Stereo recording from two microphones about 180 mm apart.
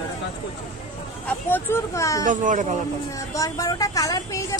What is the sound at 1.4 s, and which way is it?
Speech, 10° left (ahead or behind).